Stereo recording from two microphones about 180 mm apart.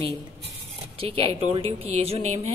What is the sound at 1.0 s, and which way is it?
A woman's voice, 30° right (ahead or behind).